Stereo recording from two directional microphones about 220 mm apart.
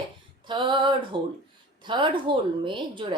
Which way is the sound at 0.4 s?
20° right (ahead or behind).